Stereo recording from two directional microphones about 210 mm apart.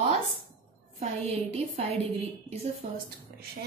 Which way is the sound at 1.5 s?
30° right (ahead or behind).